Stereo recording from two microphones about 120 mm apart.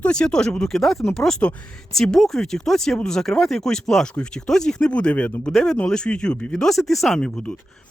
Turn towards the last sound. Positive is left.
turn(degrees=10)  # may be behind; listen again after turning